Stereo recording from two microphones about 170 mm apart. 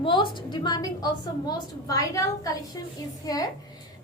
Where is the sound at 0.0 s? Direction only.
30° left (ahead or behind).